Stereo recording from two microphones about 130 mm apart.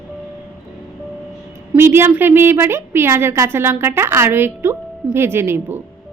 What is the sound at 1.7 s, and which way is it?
A woman's voice, 20° right (ahead or behind).